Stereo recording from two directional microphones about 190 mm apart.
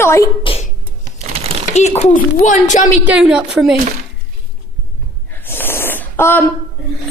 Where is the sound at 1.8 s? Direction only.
35° left (ahead or behind).